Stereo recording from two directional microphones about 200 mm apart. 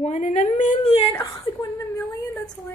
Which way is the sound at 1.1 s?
15° left (ahead or behind).